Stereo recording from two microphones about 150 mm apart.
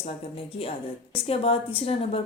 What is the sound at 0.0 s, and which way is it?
Speech, 40° left (ahead or behind).